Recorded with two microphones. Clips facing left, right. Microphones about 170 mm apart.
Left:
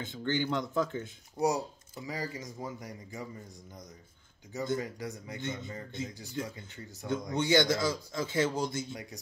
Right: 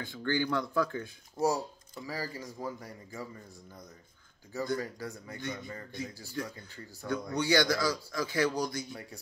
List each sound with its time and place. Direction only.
0.0 s a man's voice: 20° left (ahead or behind)
4.5 s a man's voice: 20° left (ahead or behind)